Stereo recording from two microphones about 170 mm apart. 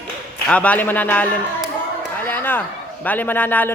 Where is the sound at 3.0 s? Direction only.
10° left (ahead or behind).